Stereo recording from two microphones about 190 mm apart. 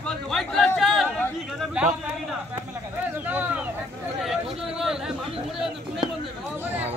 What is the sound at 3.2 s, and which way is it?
Speech, 10° right (ahead or behind).